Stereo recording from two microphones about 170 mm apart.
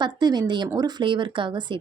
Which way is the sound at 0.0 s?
25° right (ahead or behind).